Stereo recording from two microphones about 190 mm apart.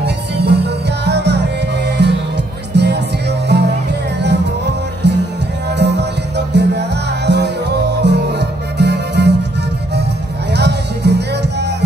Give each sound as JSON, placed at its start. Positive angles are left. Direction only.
{"t": 0.0, "sound": "music", "side_deg": -60}
{"t": 5.0, "sound": "music", "side_deg": -65}
{"t": 10.5, "sound": "music", "side_deg": -65}